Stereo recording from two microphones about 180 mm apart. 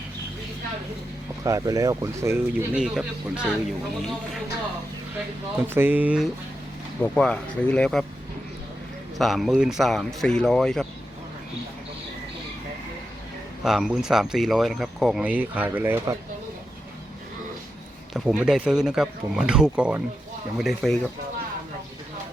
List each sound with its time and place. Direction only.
1.5 s speech: 20° right (ahead or behind)
2.8 s speech: 5° right (ahead or behind)
5.5 s speech: 10° right (ahead or behind)
7.0 s speech: 5° left (ahead or behind)
9.1 s speech: centre (ahead or behind)
13.7 s speech: centre (ahead or behind)
18.1 s speech: 5° right (ahead or behind)